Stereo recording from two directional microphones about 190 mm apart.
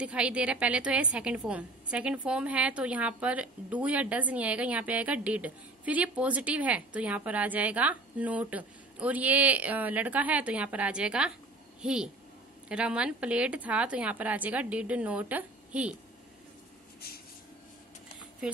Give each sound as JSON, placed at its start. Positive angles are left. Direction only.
{"t": 0.0, "sound": "a woman's voice", "side_deg": -5}